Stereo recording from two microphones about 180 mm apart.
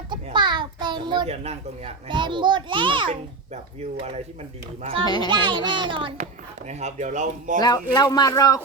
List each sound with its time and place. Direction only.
0.1 s a sound: 25° right (ahead or behind)
1.5 s a child's voice: 30° right (ahead or behind)
5.0 s speech: 25° left (ahead or behind)
5.3 s a child's voice: 25° right (ahead or behind)
6.7 s speech: 40° right (ahead or behind)
7.6 s speech: 20° left (ahead or behind)